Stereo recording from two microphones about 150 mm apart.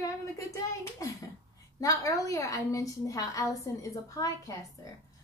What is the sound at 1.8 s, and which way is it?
A woman's voice, 20° left (ahead or behind).